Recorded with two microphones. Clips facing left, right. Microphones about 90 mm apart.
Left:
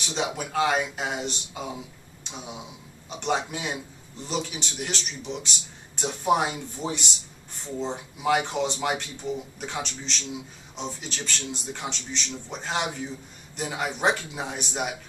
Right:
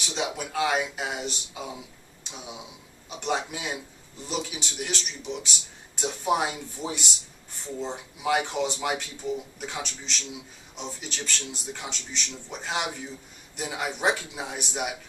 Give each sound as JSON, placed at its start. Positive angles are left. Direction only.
{"t": 0.0, "sound": "a man's voice", "side_deg": 0}